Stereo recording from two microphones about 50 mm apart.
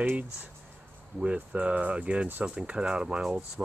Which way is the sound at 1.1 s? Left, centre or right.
Right.